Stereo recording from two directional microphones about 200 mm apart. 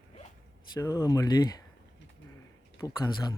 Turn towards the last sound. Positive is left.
turn(degrees=20)  # may be behind; listen again after turning